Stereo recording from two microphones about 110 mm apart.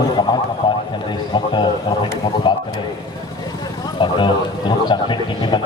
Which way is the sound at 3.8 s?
45° left (ahead or behind).